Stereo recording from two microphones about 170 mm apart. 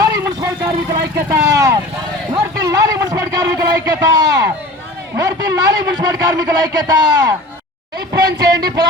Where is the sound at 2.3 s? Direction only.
20° right (ahead or behind).